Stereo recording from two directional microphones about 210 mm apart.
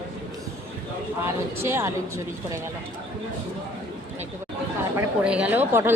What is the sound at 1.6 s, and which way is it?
Speech, 10° right (ahead or behind).